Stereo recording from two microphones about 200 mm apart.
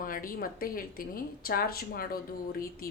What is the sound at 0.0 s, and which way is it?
Speech, 45° left (ahead or behind).